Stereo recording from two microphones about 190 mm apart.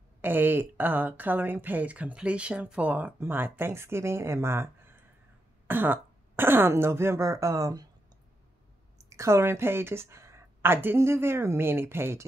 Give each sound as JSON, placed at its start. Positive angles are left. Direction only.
{"t": 0.2, "sound": "speech", "side_deg": -10}
{"t": 9.1, "sound": "speech", "side_deg": -15}